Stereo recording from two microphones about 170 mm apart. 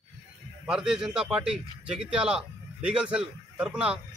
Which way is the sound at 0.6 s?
5° right (ahead or behind).